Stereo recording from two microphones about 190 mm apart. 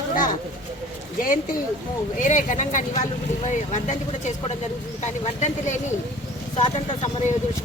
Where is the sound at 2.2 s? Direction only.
40° left (ahead or behind).